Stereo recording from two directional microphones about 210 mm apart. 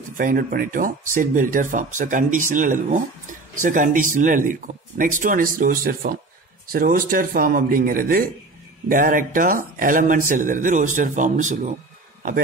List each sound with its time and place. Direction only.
0.2 s speech: 40° right (ahead or behind)